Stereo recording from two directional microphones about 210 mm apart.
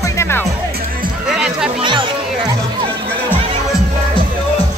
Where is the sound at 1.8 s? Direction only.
25° right (ahead or behind).